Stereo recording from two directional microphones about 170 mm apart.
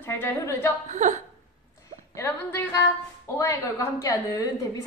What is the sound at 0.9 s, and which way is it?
Speech, 45° right (ahead or behind).